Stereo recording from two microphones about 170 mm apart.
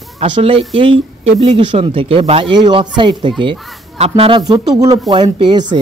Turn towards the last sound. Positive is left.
turn(degrees=-25)  # may be behind; listen again after turning